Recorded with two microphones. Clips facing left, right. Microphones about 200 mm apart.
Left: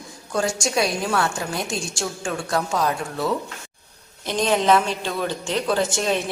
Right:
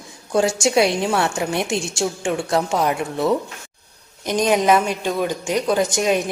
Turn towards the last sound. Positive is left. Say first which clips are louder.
# right 3 dB
turn(degrees=-15)  # may be behind; listen again after turning